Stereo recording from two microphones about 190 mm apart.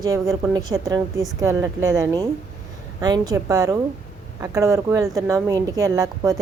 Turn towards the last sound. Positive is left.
turn(degrees=-15)  # may be behind; listen again after turning